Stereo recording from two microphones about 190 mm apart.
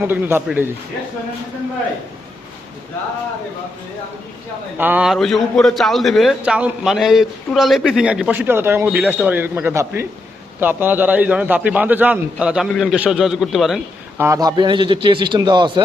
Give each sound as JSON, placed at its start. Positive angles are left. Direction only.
{"t": 0.0, "sound": "a man's voice", "side_deg": -10}
{"t": 4.8, "sound": "a man's voice", "side_deg": -10}
{"t": 14.2, "sound": "a man's voice", "side_deg": -15}